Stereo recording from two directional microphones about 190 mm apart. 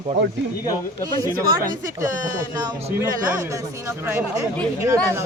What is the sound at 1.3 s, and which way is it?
Speech, 45° right (ahead or behind).